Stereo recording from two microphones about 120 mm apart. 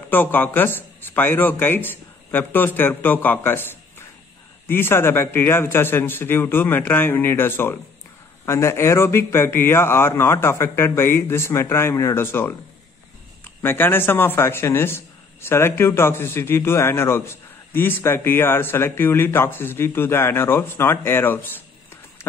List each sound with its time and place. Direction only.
0.1 s speech: 15° left (ahead or behind)
4.6 s speech: 20° left (ahead or behind)